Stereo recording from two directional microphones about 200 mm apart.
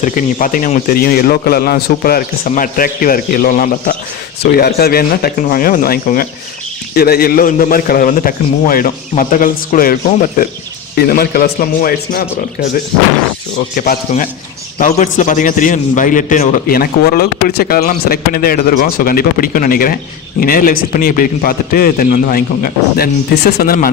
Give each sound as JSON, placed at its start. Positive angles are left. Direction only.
{"t": 0.0, "sound": "a man's voice", "side_deg": 40}